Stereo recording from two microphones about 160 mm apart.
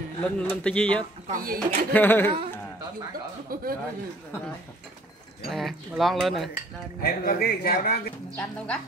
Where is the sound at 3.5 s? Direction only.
65° right (ahead or behind).